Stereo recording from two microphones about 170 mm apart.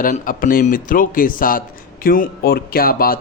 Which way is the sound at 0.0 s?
55° left (ahead or behind).